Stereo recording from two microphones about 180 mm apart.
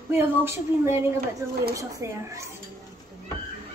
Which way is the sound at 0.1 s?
15° right (ahead or behind).